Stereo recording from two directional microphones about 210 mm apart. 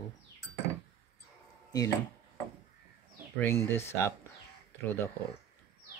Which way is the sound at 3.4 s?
10° left (ahead or behind).